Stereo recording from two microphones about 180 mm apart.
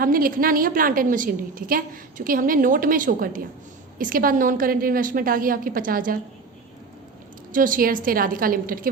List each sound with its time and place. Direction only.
0.0 s a woman's voice: 50° right (ahead or behind)
7.5 s a woman's voice: 50° right (ahead or behind)